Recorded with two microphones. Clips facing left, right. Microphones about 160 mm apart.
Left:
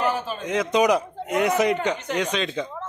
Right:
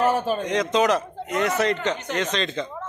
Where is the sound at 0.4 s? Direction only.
5° left (ahead or behind).